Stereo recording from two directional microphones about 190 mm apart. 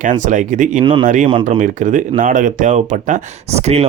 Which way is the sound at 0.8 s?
25° right (ahead or behind).